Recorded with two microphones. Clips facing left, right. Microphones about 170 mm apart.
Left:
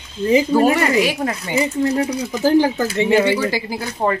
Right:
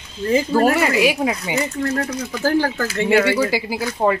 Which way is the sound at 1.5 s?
15° left (ahead or behind).